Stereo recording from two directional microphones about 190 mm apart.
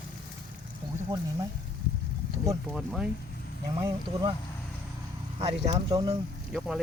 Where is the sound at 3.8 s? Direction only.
25° right (ahead or behind).